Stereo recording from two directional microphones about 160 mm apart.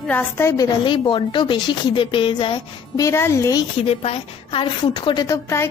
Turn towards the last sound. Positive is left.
turn(degrees=15)  # may be behind; listen again after turning